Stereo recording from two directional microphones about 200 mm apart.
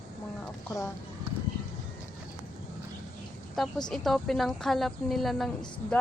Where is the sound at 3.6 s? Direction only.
5° left (ahead or behind).